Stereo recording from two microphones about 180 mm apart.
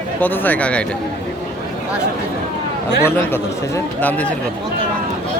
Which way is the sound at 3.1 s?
10° left (ahead or behind).